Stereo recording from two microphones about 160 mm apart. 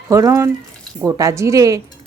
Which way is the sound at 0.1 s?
20° right (ahead or behind).